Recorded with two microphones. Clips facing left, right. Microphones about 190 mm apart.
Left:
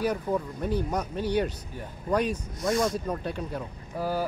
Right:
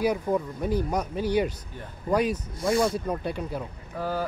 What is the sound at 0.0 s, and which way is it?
Speech, 10° right (ahead or behind).